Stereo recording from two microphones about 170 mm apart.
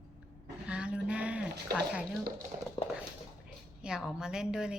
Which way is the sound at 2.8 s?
25° left (ahead or behind).